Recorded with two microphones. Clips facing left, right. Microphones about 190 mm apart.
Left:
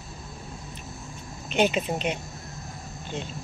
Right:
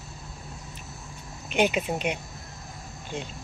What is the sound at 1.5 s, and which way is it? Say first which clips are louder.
Speech: left 1 dB; 10° right (ahead or behind).